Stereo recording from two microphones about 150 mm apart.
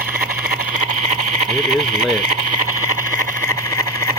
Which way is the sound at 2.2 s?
60° right (ahead or behind).